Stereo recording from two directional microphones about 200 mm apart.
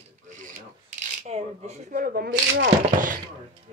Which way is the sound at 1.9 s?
45° right (ahead or behind).